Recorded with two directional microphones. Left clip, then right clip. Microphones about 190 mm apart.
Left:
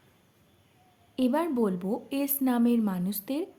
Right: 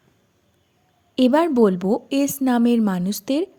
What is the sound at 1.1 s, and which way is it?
A woman's voice, 40° right (ahead or behind).